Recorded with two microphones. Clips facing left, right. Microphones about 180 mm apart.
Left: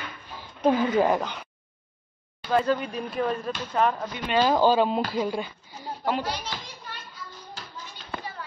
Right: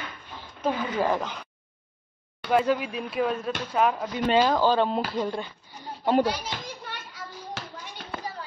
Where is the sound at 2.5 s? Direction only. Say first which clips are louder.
Right 1 dB; 10° right (ahead or behind).